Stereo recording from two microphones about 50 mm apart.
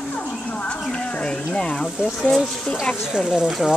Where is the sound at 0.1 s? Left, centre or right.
Left.